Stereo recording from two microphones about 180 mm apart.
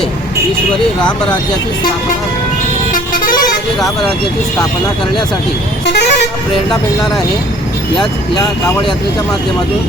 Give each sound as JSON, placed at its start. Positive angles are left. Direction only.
{"t": 5.8, "sound": "vehicle", "side_deg": 65}